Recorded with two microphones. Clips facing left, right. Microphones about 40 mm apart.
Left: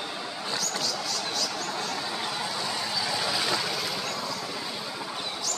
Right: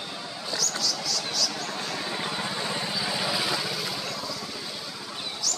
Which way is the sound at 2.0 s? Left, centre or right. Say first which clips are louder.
Right 1 dB; centre.